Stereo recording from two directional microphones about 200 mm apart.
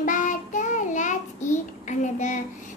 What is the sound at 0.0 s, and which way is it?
Child singing, 40° left (ahead or behind).